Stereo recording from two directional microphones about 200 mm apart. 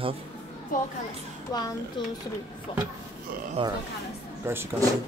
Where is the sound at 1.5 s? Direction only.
20° left (ahead or behind).